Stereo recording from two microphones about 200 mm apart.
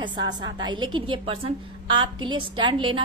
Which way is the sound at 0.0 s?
20° right (ahead or behind).